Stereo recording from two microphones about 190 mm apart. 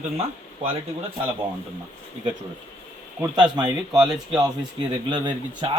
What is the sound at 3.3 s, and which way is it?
Speech, 20° right (ahead or behind).